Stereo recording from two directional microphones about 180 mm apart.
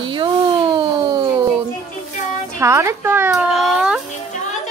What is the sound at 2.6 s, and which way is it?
A child's voice, 15° right (ahead or behind).